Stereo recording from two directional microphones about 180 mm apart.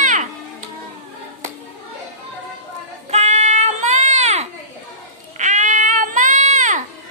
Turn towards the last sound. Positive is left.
turn(degrees=-45)  # may be behind; listen again after turning